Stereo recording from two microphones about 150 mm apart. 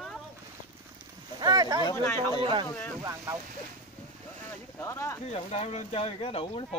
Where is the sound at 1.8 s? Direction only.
20° left (ahead or behind).